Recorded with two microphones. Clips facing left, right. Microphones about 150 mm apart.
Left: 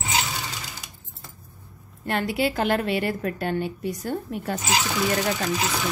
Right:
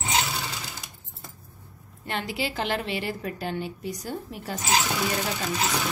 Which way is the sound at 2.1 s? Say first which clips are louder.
Left 6 dB; 50° left (ahead or behind).